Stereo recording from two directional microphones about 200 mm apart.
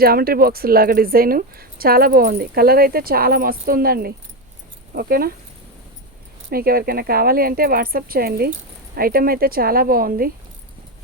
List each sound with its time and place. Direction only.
0.0 s speech: 50° right (ahead or behind)
6.5 s speech: 50° right (ahead or behind)